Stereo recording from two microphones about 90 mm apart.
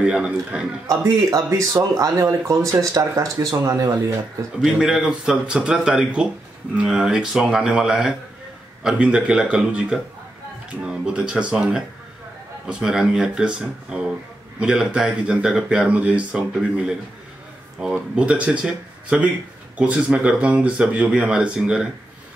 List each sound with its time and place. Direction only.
0.0 s speech: 10° right (ahead or behind)
0.8 s speech: 40° right (ahead or behind)
4.6 s speech: 5° right (ahead or behind)